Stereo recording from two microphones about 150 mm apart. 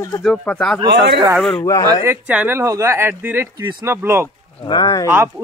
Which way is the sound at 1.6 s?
20° left (ahead or behind).